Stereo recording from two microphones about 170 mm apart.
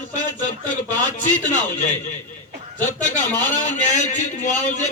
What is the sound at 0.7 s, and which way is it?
Speech, 45° left (ahead or behind).